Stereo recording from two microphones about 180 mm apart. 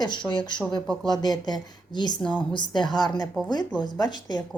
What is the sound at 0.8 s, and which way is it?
Speech, centre (ahead or behind).